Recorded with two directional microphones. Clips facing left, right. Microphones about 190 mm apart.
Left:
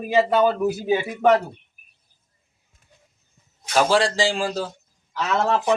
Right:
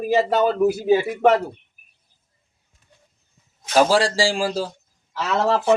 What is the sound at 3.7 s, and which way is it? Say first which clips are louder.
Speech: right 2 dB; 10° right (ahead or behind).